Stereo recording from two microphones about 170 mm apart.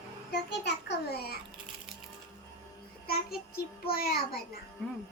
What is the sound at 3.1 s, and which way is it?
Child singing, 65° left (ahead or behind).